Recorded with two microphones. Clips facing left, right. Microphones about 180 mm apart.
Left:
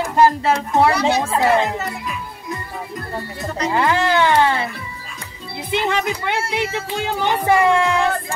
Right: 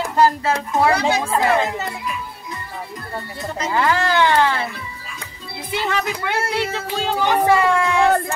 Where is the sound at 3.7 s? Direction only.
25° left (ahead or behind).